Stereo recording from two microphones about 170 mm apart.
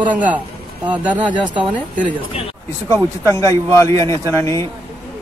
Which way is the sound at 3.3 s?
20° left (ahead or behind).